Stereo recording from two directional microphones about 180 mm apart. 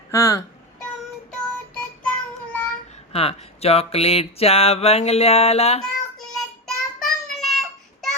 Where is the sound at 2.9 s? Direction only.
35° left (ahead or behind).